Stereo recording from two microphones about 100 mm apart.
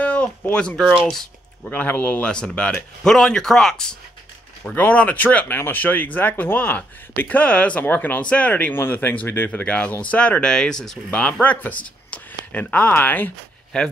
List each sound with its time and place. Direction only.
0.0 s speech: 10° left (ahead or behind)
1.7 s speech: 15° left (ahead or behind)